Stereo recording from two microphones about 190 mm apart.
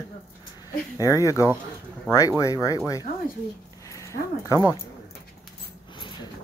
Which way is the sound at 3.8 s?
15° left (ahead or behind).